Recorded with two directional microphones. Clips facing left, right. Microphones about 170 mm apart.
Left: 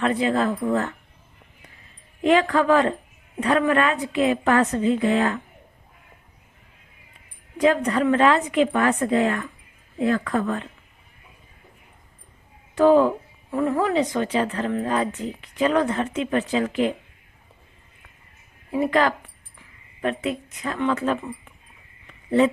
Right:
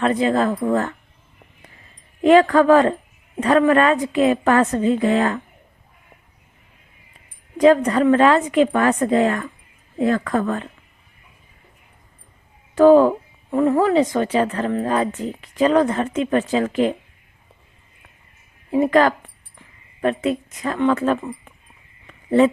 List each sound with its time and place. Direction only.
0.0 s a woman's voice: 40° right (ahead or behind)
2.2 s a woman's voice: 45° right (ahead or behind)
7.6 s a woman's voice: 40° right (ahead or behind)
12.7 s speech: 45° right (ahead or behind)
13.5 s speech: 30° right (ahead or behind)
18.7 s a woman's voice: 45° right (ahead or behind)
20.8 s speech: 50° right (ahead or behind)